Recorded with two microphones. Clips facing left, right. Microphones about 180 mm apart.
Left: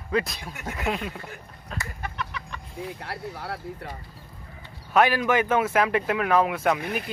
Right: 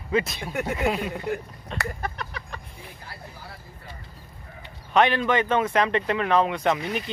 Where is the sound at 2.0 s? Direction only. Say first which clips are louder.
Right 1 dB; 40° right (ahead or behind).